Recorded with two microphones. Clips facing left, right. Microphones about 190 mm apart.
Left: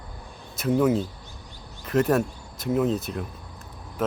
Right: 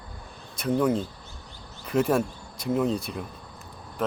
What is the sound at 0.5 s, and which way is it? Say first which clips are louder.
Speech: left 2 dB; 5° left (ahead or behind).